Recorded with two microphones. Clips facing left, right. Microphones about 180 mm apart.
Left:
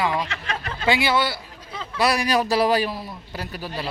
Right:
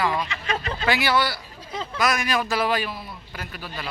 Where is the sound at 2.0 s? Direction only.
35° left (ahead or behind).